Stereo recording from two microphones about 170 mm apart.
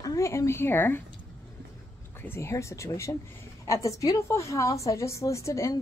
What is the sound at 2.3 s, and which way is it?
A woman's voice, 15° left (ahead or behind).